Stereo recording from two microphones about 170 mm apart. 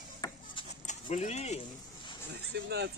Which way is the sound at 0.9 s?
45° left (ahead or behind).